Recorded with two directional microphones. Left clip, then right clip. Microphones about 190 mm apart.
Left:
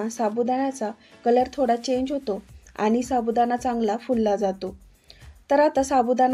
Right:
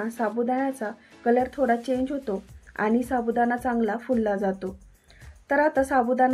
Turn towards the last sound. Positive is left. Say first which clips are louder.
# left 2 dB
turn(degrees=45)  # may be behind; listen again after turning